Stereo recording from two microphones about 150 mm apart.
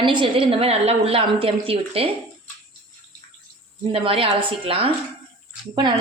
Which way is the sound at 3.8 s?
35° right (ahead or behind).